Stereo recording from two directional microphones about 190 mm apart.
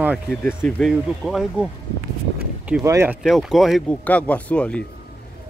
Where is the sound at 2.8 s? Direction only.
15° right (ahead or behind).